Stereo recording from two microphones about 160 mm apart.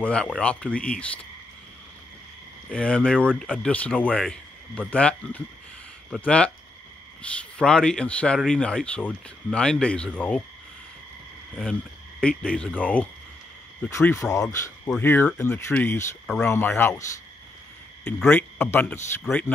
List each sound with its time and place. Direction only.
0.0 s speech: 5° left (ahead or behind)
2.7 s speech: 5° left (ahead or behind)
12.2 s speech: 5° left (ahead or behind)
13.8 s speech: 20° left (ahead or behind)
18.0 s speech: 10° left (ahead or behind)